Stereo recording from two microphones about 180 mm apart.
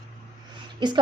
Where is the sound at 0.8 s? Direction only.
25° right (ahead or behind).